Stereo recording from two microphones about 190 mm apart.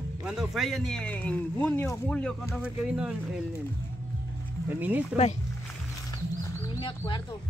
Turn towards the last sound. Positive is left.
turn(degrees=25)  # may be behind; listen again after turning